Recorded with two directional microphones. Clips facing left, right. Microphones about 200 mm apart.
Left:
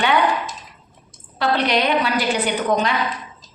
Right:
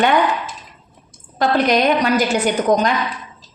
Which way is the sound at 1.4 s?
45° right (ahead or behind).